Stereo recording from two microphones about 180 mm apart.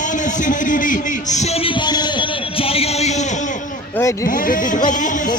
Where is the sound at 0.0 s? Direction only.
45° left (ahead or behind).